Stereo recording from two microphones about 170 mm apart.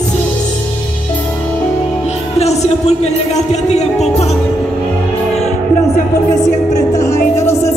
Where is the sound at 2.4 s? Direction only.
40° left (ahead or behind).